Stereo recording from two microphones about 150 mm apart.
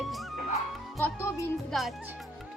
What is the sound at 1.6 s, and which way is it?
Speech, centre (ahead or behind).